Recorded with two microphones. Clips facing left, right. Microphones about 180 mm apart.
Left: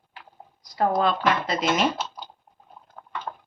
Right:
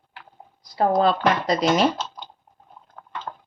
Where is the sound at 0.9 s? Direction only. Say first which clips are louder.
Right 5 dB; 40° right (ahead or behind).